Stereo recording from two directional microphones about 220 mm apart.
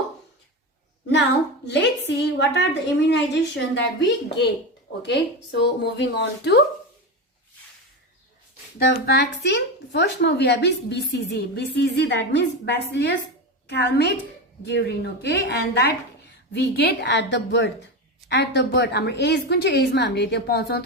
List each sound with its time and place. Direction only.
1.6 s speech: 50° left (ahead or behind)
8.9 s speech: 45° left (ahead or behind)